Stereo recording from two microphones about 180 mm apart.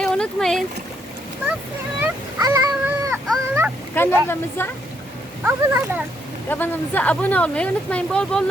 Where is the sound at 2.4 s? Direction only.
20° right (ahead or behind).